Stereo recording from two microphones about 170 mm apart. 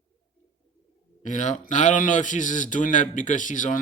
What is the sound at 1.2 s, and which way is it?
A man's voice, 45° left (ahead or behind).